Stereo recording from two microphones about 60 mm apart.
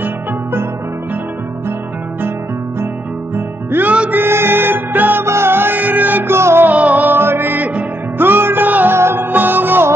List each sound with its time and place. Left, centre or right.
0.0 s music: right
3.3 s music: right
5.2 s music: right
6.3 s music: right
6.7 s music: right
7.2 s music: right
8.9 s music: right